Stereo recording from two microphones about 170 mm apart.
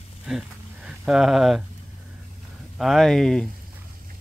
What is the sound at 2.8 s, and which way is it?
Speech, centre (ahead or behind).